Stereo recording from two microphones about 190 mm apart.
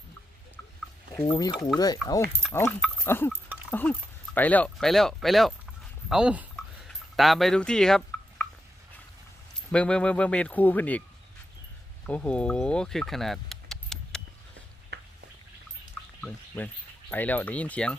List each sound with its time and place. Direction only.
1.1 s speech: 15° left (ahead or behind)
6.1 s a sound: 5° right (ahead or behind)
9.7 s speech: 5° left (ahead or behind)
12.0 s speech: 10° left (ahead or behind)
14.9 s a sound: 60° right (ahead or behind)
17.1 s speech: 10° left (ahead or behind)